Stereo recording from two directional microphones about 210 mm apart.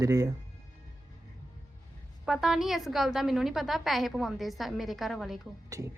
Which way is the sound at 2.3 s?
Centre (ahead or behind).